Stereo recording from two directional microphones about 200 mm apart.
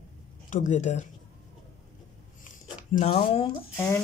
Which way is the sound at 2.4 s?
35° left (ahead or behind).